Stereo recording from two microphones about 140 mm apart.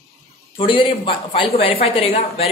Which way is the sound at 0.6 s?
40° left (ahead or behind).